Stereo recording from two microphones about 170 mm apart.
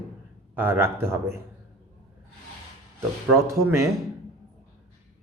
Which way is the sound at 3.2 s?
15° right (ahead or behind).